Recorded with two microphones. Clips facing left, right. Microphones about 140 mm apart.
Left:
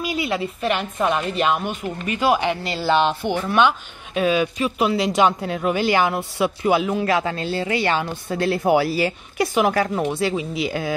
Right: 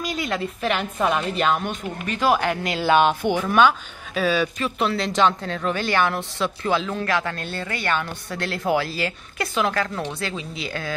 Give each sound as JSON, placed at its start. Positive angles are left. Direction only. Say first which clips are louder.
{"t": 0.0, "sound": "a woman's voice", "louder": "left 2 dB", "side_deg": 10}
{"t": 3.0, "sound": "speech", "louder": "right 1 dB", "side_deg": -10}
{"t": 3.3, "sound": "a woman's voice", "louder": "left 1 dB", "side_deg": 10}